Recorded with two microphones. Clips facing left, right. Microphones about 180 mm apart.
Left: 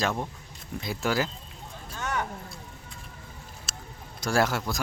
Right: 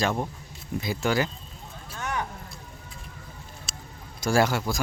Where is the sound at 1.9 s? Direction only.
10° right (ahead or behind).